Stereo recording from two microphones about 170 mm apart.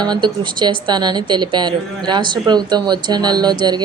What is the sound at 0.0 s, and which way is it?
A woman's voice, 25° right (ahead or behind).